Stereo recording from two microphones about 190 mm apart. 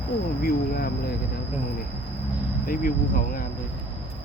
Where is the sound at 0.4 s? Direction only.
50° left (ahead or behind).